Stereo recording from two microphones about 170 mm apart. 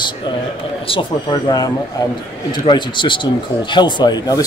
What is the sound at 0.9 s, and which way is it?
Speech, 30° left (ahead or behind).